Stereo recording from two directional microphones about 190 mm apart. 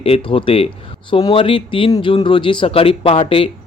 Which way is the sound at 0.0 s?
30° left (ahead or behind).